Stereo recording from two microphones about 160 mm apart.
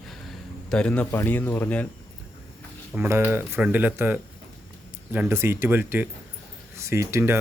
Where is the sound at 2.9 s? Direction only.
15° right (ahead or behind).